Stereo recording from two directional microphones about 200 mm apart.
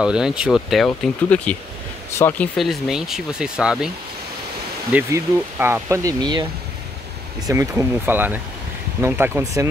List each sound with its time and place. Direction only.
0.0 s speech: 5° right (ahead or behind)
4.9 s speech: 10° right (ahead or behind)
7.4 s speech: 10° right (ahead or behind)